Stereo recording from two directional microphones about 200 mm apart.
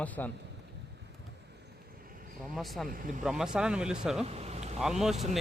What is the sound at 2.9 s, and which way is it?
Speech, 40° right (ahead or behind).